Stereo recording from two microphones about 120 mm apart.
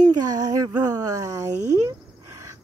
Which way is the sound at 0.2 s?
30° right (ahead or behind).